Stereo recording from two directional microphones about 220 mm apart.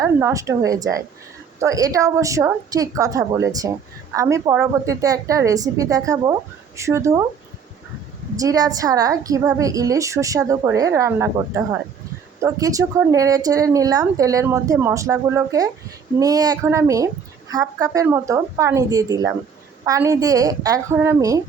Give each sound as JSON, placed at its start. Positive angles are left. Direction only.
{"t": 0.0, "sound": "a woman's voice", "side_deg": -10}
{"t": 8.4, "sound": "a woman's voice", "side_deg": -15}